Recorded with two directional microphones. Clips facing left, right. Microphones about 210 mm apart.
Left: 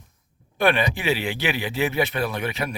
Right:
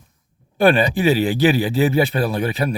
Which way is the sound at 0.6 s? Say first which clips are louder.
Right 6 dB; 35° right (ahead or behind).